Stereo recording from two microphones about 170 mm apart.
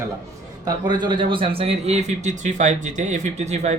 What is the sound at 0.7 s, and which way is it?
A man's voice, 25° right (ahead or behind).